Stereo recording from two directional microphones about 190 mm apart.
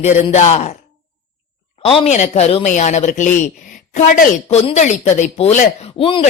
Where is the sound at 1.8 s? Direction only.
30° left (ahead or behind).